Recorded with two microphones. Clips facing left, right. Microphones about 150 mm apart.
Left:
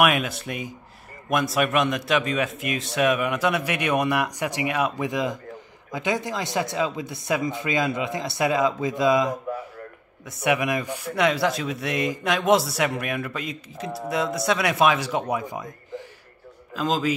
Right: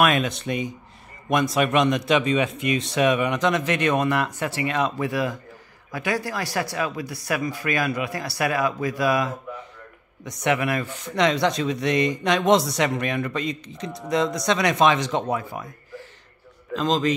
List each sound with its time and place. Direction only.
0.0 s speech: 10° left (ahead or behind)
10.2 s speech: 5° left (ahead or behind)
16.7 s a man's voice: 5° left (ahead or behind)